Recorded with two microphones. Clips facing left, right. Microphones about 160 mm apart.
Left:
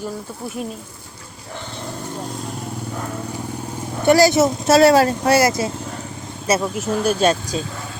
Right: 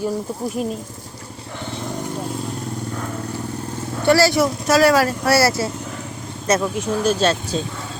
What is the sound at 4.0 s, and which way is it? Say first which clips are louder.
Speech: left 2 dB; 20° left (ahead or behind).